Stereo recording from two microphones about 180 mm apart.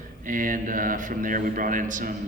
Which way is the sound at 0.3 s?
50° right (ahead or behind).